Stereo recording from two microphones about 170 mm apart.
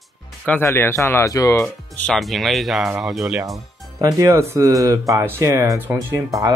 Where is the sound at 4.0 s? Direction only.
20° right (ahead or behind).